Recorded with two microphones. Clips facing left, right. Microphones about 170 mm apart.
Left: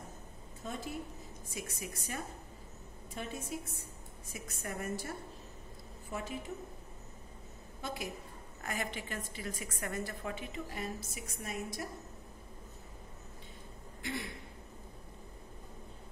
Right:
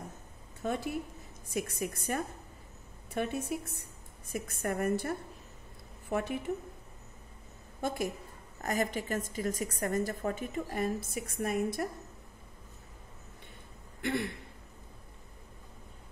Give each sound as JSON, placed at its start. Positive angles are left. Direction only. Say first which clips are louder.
{"t": 0.7, "sound": "a woman's voice", "louder": "right 7 dB", "side_deg": -65}
{"t": 7.8, "sound": "a woman's voice", "louder": "right 7 dB", "side_deg": -50}
{"t": 14.0, "sound": "a woman's voice", "louder": "right 8 dB", "side_deg": -60}